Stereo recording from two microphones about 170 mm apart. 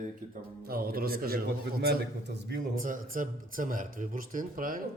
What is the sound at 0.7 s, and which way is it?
A man's voice, 60° right (ahead or behind).